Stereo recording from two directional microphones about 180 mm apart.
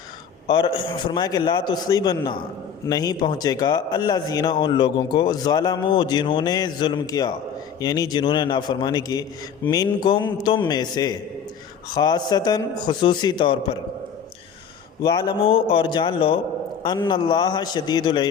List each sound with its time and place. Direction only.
0.4 s a man's voice: 25° left (ahead or behind)
15.0 s a man's voice: 25° left (ahead or behind)